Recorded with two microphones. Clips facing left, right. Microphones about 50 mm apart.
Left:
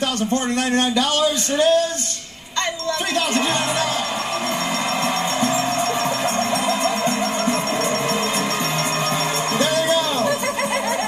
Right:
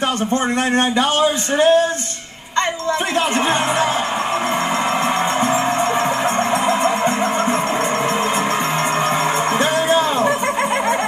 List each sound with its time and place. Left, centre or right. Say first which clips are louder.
0.7 s speech: right 3 dB; right
9.6 s music: right 1 dB; right